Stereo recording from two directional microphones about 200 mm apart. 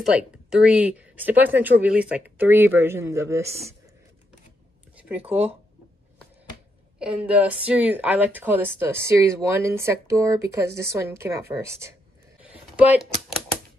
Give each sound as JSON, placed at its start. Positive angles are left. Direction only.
{"t": 0.1, "sound": "a woman's voice", "side_deg": -5}
{"t": 5.2, "sound": "speech", "side_deg": -30}
{"t": 7.0, "sound": "a woman's voice", "side_deg": -5}
{"t": 12.4, "sound": "a sound", "side_deg": -5}